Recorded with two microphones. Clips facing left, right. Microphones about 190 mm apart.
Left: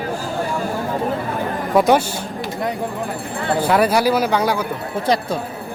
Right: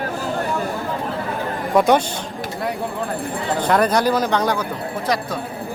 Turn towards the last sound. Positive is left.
turn(degrees=30)  # may be behind; listen again after turning